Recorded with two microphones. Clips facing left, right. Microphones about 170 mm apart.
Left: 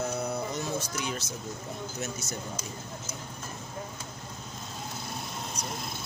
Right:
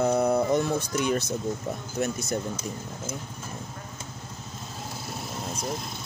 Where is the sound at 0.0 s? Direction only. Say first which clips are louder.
Right 9 dB; 60° right (ahead or behind).